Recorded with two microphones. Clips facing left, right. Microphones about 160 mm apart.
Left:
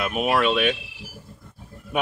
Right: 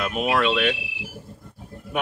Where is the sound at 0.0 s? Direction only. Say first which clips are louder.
Left 1 dB; 5° left (ahead or behind).